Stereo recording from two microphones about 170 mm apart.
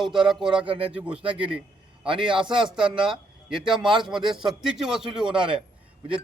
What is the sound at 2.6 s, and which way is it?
Speech, 5° right (ahead or behind).